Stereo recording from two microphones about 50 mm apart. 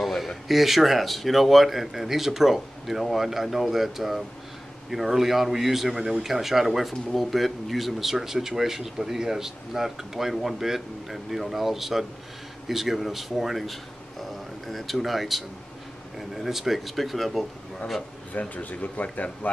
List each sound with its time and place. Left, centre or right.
0.0 s a sound: centre
0.5 s speech: centre
18.5 s speech: left